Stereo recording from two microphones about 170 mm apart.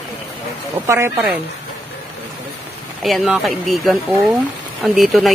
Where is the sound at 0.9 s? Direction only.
10° right (ahead or behind).